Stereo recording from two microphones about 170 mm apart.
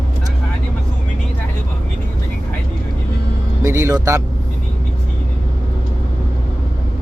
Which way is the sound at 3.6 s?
15° right (ahead or behind).